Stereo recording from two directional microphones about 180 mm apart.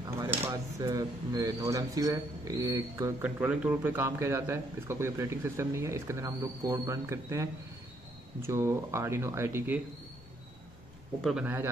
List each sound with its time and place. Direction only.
0.5 s speech: 20° right (ahead or behind)
11.1 s a man's voice: centre (ahead or behind)